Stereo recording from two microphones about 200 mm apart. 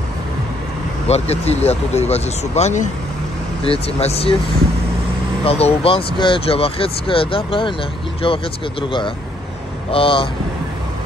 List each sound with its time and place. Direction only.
1.0 s speech: 30° left (ahead or behind)
5.4 s speech: 30° left (ahead or behind)
9.8 s speech: 25° left (ahead or behind)